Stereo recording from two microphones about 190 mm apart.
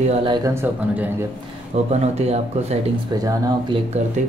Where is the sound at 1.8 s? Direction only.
35° right (ahead or behind).